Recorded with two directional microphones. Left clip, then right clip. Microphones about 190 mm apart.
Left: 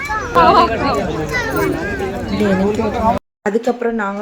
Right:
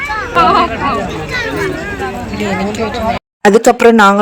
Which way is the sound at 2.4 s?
50° left (ahead or behind).